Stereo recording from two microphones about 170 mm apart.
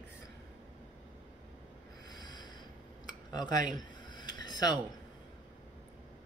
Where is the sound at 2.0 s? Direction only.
25° left (ahead or behind).